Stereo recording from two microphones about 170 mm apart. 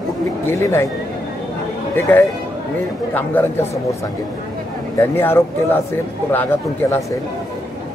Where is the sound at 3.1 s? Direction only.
10° left (ahead or behind).